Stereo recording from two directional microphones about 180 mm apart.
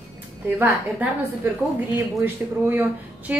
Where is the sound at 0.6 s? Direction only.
10° right (ahead or behind).